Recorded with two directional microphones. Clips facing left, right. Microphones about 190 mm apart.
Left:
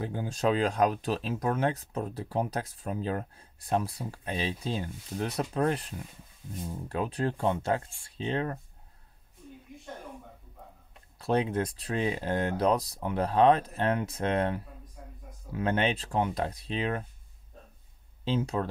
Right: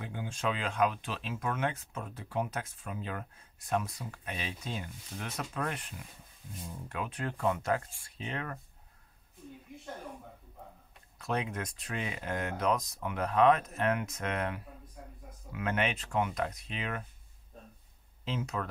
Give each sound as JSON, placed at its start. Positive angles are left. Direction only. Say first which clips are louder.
{"t": 0.0, "sound": "speech", "louder": "left 6 dB", "side_deg": 35}
{"t": 11.1, "sound": "speech", "louder": "left 7 dB", "side_deg": 30}
{"t": 18.2, "sound": "speech", "louder": "left 6 dB", "side_deg": 30}